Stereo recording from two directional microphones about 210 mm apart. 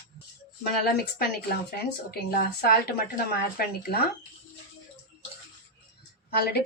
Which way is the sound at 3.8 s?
45° left (ahead or behind).